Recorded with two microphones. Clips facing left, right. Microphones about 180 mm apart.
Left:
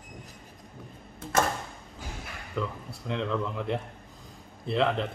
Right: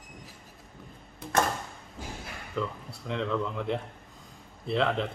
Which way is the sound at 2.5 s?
Centre (ahead or behind).